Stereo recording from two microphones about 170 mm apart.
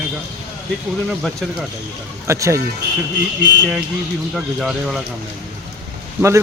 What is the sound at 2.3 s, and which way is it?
Speech, 15° right (ahead or behind).